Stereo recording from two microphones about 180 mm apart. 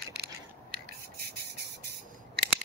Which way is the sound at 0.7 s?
60° right (ahead or behind).